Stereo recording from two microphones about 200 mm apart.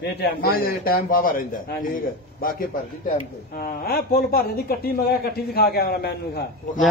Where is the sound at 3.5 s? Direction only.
50° left (ahead or behind).